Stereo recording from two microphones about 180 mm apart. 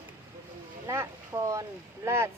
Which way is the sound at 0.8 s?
15° right (ahead or behind).